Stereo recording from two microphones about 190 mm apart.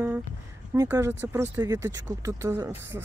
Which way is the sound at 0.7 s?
15° right (ahead or behind).